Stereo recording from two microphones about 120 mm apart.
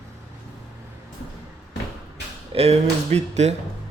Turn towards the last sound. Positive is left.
turn(degrees=-65)  # may be behind; listen again after turning